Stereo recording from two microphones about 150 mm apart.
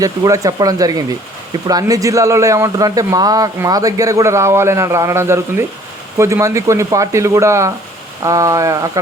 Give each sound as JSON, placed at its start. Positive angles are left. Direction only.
{"t": 0.0, "sound": "speech", "side_deg": -25}